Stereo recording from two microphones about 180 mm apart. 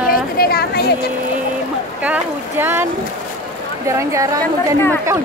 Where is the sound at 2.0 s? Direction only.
10° right (ahead or behind).